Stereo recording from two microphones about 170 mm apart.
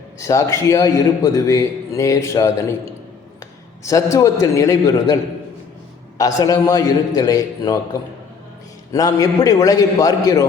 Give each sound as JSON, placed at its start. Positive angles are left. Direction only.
{"t": 0.2, "sound": "a man's voice", "side_deg": 15}
{"t": 6.1, "sound": "a man's voice", "side_deg": 20}
{"t": 8.9, "sound": "a man's voice", "side_deg": 20}